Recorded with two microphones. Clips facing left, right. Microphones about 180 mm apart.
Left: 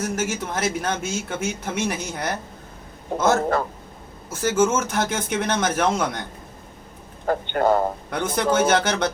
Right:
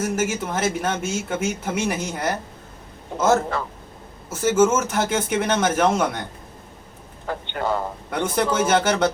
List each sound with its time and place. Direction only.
0.0 s a man's voice: 5° right (ahead or behind)
3.1 s a man's voice: 45° left (ahead or behind)
4.3 s a man's voice: 5° right (ahead or behind)
7.3 s a man's voice: 45° left (ahead or behind)
8.1 s a man's voice: 5° right (ahead or behind)